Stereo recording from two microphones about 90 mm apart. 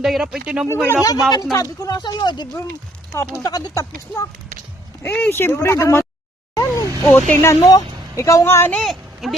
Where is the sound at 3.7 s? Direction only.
35° left (ahead or behind).